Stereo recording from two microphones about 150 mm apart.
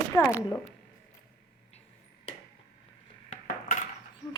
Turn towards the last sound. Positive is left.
turn(degrees=60)  # may be behind; listen again after turning